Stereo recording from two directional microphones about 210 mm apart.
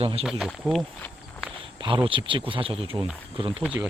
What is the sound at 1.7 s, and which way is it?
Speech, 25° right (ahead or behind).